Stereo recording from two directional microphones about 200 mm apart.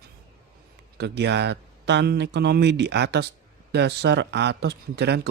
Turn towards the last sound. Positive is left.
turn(degrees=-55)  # may be behind; listen again after turning